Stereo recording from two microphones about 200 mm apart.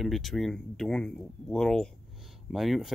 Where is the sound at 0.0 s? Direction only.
Centre (ahead or behind).